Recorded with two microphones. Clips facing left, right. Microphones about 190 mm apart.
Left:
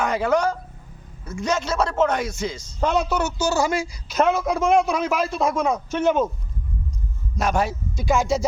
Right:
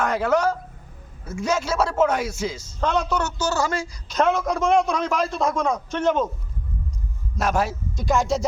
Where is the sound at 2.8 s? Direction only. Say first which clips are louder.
Left 2 dB; 10° left (ahead or behind).